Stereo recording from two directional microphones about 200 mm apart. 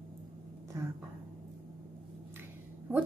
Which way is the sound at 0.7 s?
15° right (ahead or behind).